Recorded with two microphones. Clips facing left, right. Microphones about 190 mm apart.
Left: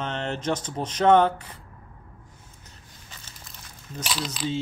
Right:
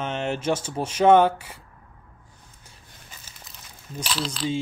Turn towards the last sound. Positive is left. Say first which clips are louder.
# right 2 dB
turn(degrees=10)  # may be behind; listen again after turning